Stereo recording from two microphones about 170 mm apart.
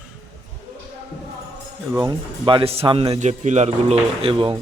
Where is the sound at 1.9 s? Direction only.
20° right (ahead or behind).